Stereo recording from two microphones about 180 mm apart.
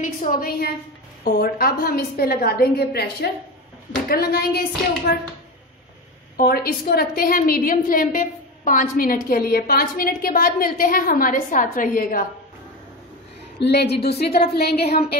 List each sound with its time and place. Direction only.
0.0 s a woman's voice: 50° left (ahead or behind)
6.3 s a woman's voice: 55° left (ahead or behind)
13.6 s a woman's voice: 65° left (ahead or behind)